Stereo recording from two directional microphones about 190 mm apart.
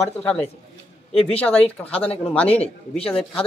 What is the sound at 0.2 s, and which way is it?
Speech, 5° left (ahead or behind).